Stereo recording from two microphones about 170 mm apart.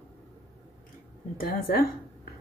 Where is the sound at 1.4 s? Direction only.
60° left (ahead or behind).